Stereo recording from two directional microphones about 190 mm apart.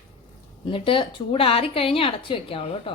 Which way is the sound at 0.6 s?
30° left (ahead or behind).